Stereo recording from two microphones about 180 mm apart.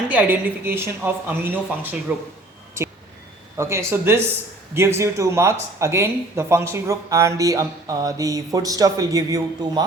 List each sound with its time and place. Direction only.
0.1 s speech: 10° right (ahead or behind)
3.6 s speech: 15° right (ahead or behind)